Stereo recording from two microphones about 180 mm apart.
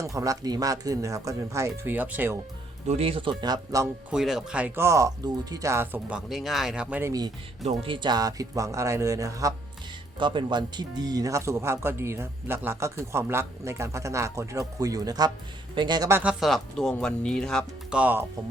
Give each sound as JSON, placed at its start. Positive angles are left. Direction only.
{"t": 0.0, "sound": "speech", "side_deg": -20}
{"t": 2.8, "sound": "speech", "side_deg": -35}
{"t": 4.1, "sound": "speech", "side_deg": 0}
{"t": 7.6, "sound": "speech", "side_deg": -35}
{"t": 16.4, "sound": "speech", "side_deg": 0}
{"t": 17.9, "sound": "speech", "side_deg": -10}